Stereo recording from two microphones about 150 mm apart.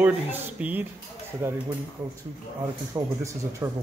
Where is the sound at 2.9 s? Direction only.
20° right (ahead or behind).